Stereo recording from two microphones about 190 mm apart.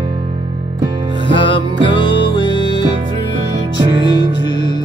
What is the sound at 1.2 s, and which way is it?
Music, 25° left (ahead or behind).